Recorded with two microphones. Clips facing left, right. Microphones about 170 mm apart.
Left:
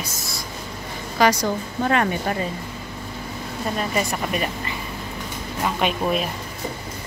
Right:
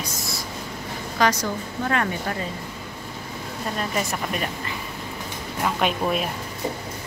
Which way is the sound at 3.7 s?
5° left (ahead or behind).